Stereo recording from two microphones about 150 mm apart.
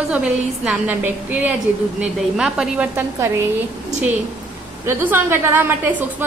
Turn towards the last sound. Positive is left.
turn(degrees=-15)  # may be behind; listen again after turning